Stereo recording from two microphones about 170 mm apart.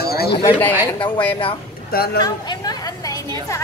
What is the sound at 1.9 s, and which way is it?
Speech, 65° left (ahead or behind).